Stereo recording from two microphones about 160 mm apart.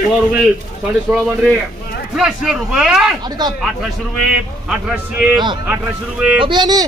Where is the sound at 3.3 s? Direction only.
25° right (ahead or behind).